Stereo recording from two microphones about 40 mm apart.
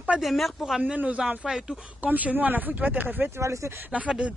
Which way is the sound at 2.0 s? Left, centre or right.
Right.